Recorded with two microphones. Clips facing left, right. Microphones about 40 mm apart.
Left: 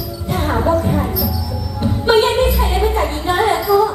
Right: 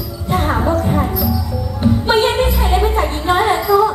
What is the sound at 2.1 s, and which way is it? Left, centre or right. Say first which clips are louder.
Music: left 4 dB; centre.